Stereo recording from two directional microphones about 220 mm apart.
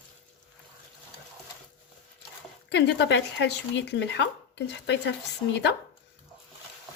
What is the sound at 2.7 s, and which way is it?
Speech, 50° left (ahead or behind).